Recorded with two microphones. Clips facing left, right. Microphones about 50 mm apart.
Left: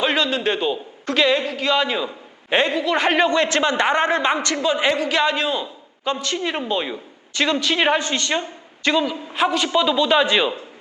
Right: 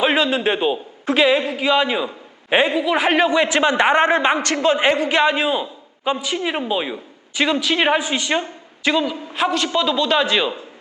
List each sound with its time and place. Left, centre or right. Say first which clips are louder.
0.0 s a man's voice: right 3 dB; centre